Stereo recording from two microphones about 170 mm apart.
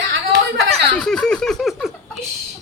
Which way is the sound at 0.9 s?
5° left (ahead or behind).